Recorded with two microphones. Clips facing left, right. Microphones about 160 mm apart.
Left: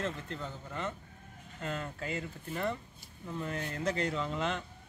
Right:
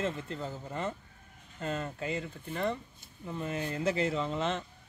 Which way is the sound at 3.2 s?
10° right (ahead or behind).